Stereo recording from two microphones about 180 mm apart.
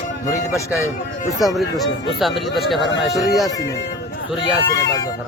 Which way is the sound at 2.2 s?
Centre (ahead or behind).